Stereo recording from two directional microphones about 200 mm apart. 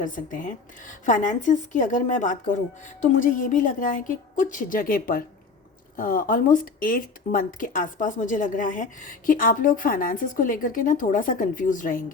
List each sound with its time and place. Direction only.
0.0 s a woman's voice: 40° left (ahead or behind)